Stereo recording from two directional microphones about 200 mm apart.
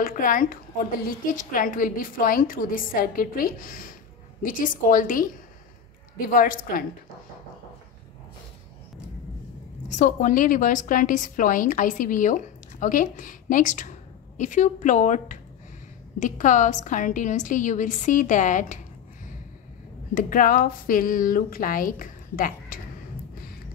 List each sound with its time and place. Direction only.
0.0 s a woman's voice: 45° left (ahead or behind)
9.8 s a woman's voice: 40° left (ahead or behind)
20.2 s a woman's voice: 45° left (ahead or behind)